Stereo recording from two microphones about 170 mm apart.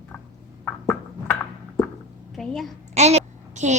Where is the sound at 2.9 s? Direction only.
40° right (ahead or behind).